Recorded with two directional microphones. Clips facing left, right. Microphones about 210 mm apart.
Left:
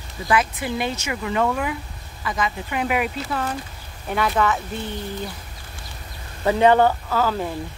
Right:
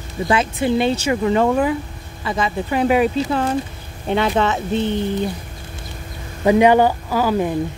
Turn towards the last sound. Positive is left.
turn(degrees=-15)  # may be behind; listen again after turning